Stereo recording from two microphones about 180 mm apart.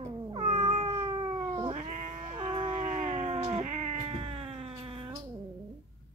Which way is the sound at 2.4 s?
30° right (ahead or behind).